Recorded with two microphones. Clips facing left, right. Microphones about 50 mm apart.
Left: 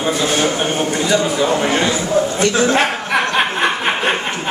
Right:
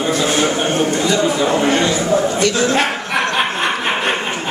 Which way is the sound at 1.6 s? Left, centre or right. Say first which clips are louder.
Right 1 dB; centre.